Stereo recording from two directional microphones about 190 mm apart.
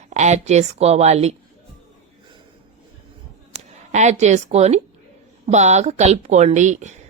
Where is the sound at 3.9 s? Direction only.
35° right (ahead or behind).